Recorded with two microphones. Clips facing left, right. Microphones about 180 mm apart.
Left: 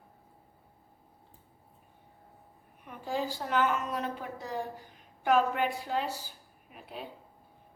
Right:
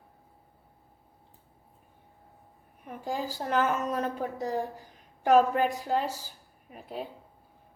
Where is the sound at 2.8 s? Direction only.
40° right (ahead or behind).